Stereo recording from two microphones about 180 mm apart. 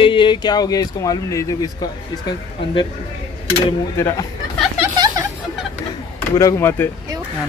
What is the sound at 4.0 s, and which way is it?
Speech, 15° left (ahead or behind).